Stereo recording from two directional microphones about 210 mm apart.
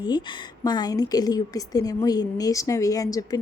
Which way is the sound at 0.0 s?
20° left (ahead or behind).